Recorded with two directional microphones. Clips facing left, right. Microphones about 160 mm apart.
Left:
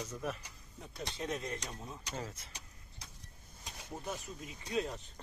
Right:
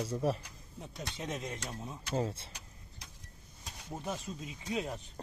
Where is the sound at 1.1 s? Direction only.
20° right (ahead or behind).